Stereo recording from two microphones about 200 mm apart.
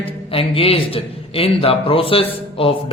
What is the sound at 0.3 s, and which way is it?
A man's voice, 30° left (ahead or behind).